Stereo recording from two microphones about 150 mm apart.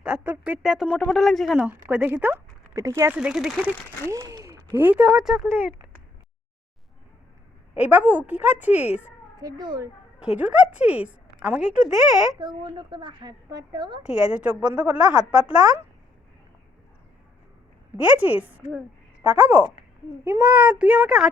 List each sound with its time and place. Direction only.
0.0 s speech: 10° right (ahead or behind)
1.5 s a woman's voice: 10° right (ahead or behind)
3.2 s speech: 5° right (ahead or behind)
4.1 s a woman's voice: 20° right (ahead or behind)
7.8 s a woman's voice: 10° right (ahead or behind)
8.9 s a child's voice: 50° left (ahead or behind)
9.4 s a woman's voice: 25° right (ahead or behind)
10.2 s a woman's voice: 10° right (ahead or behind)
12.4 s a woman's voice: 30° right (ahead or behind)
14.0 s a woman's voice: 5° right (ahead or behind)
17.9 s a woman's voice: 10° right (ahead or behind)